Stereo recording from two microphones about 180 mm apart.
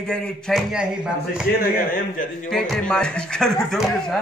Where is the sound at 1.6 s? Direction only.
55° left (ahead or behind).